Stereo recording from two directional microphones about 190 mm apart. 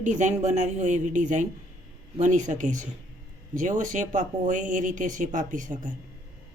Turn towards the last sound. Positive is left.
turn(degrees=-45)  # may be behind; listen again after turning